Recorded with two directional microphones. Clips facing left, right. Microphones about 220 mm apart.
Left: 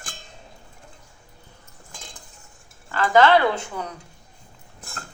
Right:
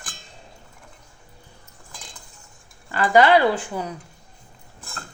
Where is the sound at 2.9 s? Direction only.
15° right (ahead or behind).